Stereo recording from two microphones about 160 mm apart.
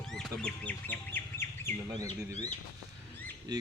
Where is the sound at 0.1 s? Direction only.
5° left (ahead or behind).